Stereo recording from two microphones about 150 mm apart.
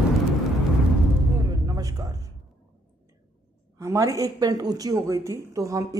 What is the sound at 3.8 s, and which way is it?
Speech, 20° right (ahead or behind).